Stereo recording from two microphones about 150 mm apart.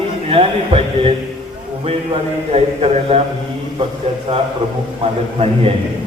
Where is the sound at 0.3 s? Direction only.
40° right (ahead or behind).